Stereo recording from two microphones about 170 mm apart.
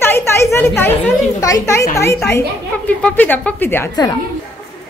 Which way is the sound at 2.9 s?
10° left (ahead or behind).